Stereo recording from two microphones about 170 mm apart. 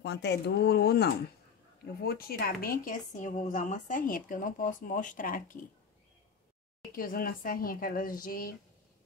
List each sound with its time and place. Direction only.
0.0 s speech: 85° left; by 5.7 s 55° left (ahead or behind)
7.0 s speech: 55° left (ahead or behind)